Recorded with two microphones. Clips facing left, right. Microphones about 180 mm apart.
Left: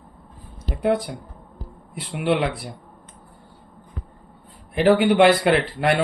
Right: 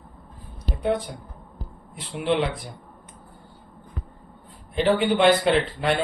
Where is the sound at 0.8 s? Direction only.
90° left.